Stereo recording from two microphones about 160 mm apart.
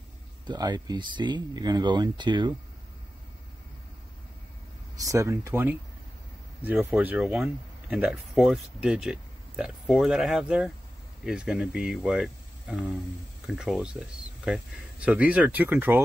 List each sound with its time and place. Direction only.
0.5 s speech: 25° right (ahead or behind)
5.0 s speech: 20° right (ahead or behind)